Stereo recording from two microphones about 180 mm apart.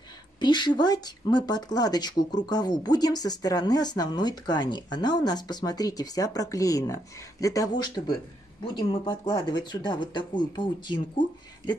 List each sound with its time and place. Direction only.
0.4 s speech: 25° left (ahead or behind)